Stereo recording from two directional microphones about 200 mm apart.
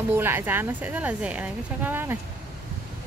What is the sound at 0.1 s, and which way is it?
Speech, 10° right (ahead or behind).